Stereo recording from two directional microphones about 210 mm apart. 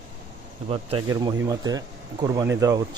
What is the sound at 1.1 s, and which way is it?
Speech, 15° right (ahead or behind).